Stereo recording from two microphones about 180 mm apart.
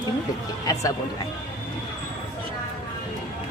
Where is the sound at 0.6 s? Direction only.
20° left (ahead or behind).